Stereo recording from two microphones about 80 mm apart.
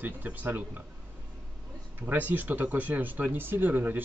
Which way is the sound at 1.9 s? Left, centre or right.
Right.